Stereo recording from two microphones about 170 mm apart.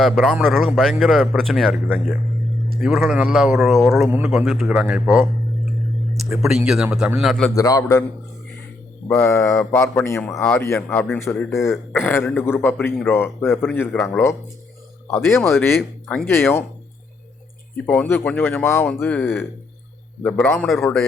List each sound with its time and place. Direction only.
0.0 s a man's voice: centre (ahead or behind)
6.3 s a man's voice: 5° right (ahead or behind)
7.5 s a man's voice: 20° left (ahead or behind)
9.0 s speech: 10° left (ahead or behind)
11.5 s a man's voice: centre (ahead or behind)
11.9 s speech: 15° left (ahead or behind)
15.4 s speech: 15° left (ahead or behind)
17.7 s speech: 10° left (ahead or behind)